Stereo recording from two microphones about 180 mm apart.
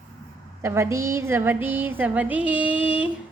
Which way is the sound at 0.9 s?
15° right (ahead or behind).